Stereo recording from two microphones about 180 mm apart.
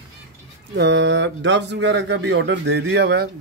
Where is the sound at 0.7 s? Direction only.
75° right (ahead or behind).